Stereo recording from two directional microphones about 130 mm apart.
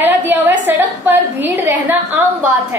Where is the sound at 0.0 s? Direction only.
15° right (ahead or behind).